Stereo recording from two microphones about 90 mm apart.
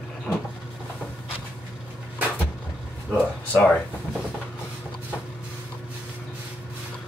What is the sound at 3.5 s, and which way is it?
Speech, 20° left (ahead or behind).